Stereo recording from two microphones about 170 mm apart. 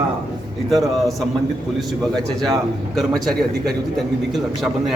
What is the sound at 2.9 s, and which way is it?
Speech, centre (ahead or behind).